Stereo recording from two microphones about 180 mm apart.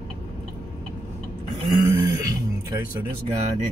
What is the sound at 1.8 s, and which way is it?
Throat clearing, 20° right (ahead or behind).